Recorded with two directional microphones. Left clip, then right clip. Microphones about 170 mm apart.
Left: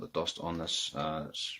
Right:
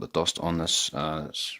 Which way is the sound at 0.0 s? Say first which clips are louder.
Right 8 dB; 70° right (ahead or behind).